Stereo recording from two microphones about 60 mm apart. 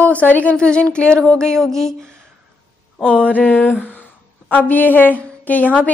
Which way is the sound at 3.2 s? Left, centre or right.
Left.